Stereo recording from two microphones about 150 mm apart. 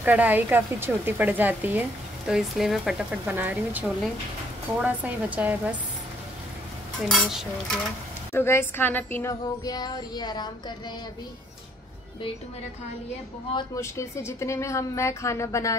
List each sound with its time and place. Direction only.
0.0 s a woman's voice: 10° right (ahead or behind)
7.0 s dishes: centre (ahead or behind)
8.3 s child singing: 15° left (ahead or behind)
13.7 s a woman's voice: 20° left (ahead or behind)